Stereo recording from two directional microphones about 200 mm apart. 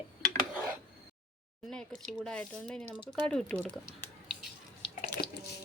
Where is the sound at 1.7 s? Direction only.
5° left (ahead or behind).